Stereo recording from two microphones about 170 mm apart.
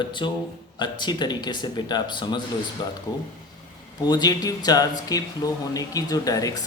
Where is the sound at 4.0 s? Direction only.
25° left (ahead or behind).